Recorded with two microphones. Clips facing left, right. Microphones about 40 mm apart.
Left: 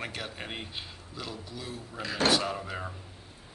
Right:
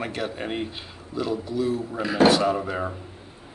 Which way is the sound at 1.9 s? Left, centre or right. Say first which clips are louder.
Right 7 dB; centre.